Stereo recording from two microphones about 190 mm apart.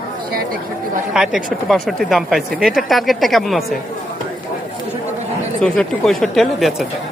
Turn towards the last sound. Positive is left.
turn(degrees=0)  # may be behind; listen again after turning